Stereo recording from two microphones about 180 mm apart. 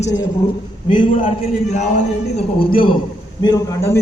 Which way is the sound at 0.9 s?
30° left (ahead or behind).